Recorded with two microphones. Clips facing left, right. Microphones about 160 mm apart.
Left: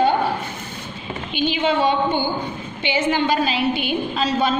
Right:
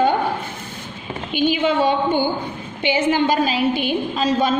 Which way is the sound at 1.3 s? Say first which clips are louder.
Right 2 dB; 50° right (ahead or behind).